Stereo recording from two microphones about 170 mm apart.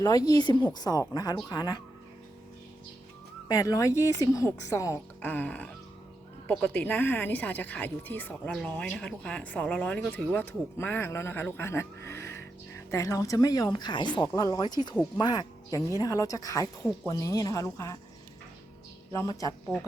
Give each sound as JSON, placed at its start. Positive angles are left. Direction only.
{"t": 0.0, "sound": "a woman's voice", "side_deg": 20}
{"t": 3.5, "sound": "a woman's voice", "side_deg": 20}
{"t": 19.1, "sound": "a woman's voice", "side_deg": 20}